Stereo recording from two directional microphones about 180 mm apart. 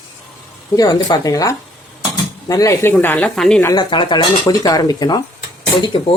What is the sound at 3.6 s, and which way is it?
Speech, 25° left (ahead or behind).